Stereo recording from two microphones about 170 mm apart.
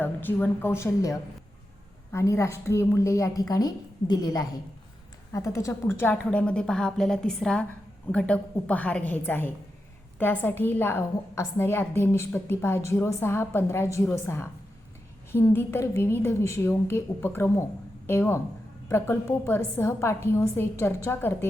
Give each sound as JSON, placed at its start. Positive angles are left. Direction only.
{"t": 0.0, "sound": "a woman's voice", "side_deg": 10}